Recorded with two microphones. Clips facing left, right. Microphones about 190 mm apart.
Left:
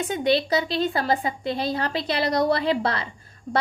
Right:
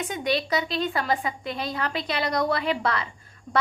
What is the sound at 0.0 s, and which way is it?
A woman's voice, 30° left (ahead or behind).